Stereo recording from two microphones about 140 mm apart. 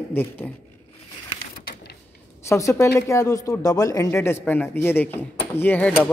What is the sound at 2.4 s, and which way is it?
Speech, 20° left (ahead or behind).